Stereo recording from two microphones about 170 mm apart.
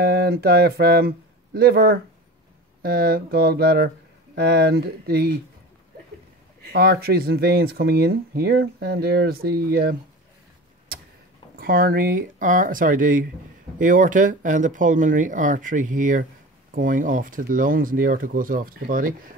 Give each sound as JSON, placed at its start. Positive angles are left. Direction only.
{"t": 0.0, "sound": "speech", "side_deg": -65}
{"t": 6.7, "sound": "speech", "side_deg": -65}
{"t": 11.5, "sound": "speech", "side_deg": -55}